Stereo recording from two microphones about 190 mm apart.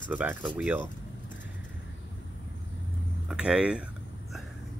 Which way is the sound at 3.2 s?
5° right (ahead or behind).